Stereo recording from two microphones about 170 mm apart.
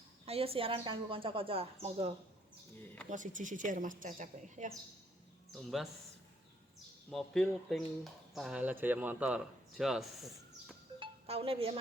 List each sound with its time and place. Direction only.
0.3 s speech: 35° right (ahead or behind)
3.1 s a woman's voice: 50° right (ahead or behind)
5.5 s a man's voice: centre (ahead or behind)
7.1 s a man's voice: centre (ahead or behind)
11.0 s speech: 35° right (ahead or behind)